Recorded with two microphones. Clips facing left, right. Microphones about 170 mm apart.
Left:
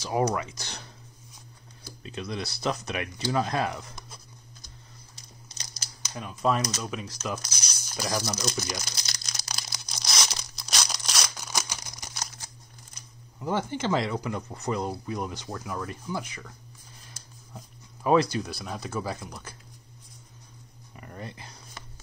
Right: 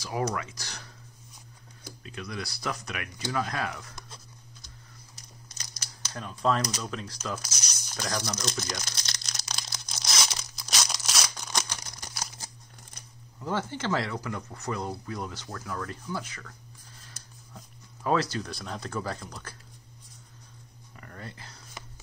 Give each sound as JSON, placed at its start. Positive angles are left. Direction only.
{"t": 0.3, "sound": "speech", "side_deg": 20}
{"t": 2.0, "sound": "speech", "side_deg": 25}
{"t": 5.1, "sound": "typing", "side_deg": 25}
{"t": 6.1, "sound": "speech", "side_deg": 10}
{"t": 7.4, "sound": "a sound", "side_deg": -5}
{"t": 7.9, "sound": "crumpling", "side_deg": 5}
{"t": 13.4, "sound": "speech", "side_deg": 15}
{"t": 18.0, "sound": "speech", "side_deg": 15}
{"t": 21.0, "sound": "a sound", "side_deg": 20}